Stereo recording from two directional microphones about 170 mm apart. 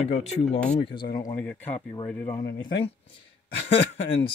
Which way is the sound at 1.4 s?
10° left (ahead or behind).